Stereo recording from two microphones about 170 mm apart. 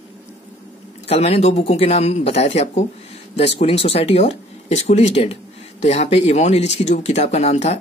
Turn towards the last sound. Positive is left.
turn(degrees=40)  # may be behind; listen again after turning